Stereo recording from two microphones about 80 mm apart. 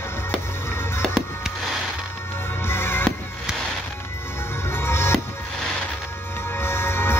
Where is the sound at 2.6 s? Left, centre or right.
Left.